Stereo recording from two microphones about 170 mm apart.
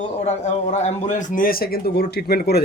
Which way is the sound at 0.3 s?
40° left (ahead or behind).